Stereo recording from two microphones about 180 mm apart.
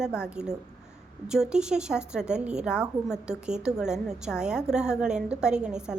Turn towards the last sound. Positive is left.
turn(degrees=-5)  # may be behind; listen again after turning